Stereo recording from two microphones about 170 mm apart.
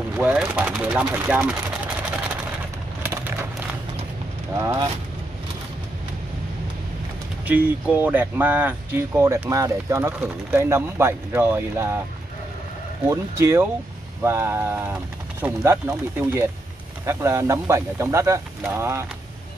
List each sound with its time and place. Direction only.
0.2 s speech: 10° right (ahead or behind)
3.0 s a sound: 10° right (ahead or behind)
7.4 s speech: 10° right (ahead or behind)
13.1 s speech: 15° right (ahead or behind)